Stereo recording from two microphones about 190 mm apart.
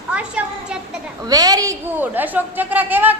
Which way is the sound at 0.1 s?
5° right (ahead or behind).